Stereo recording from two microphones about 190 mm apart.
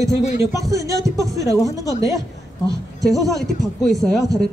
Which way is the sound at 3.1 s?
Centre (ahead or behind).